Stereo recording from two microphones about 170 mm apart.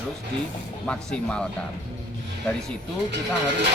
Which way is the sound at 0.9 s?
5° left (ahead or behind).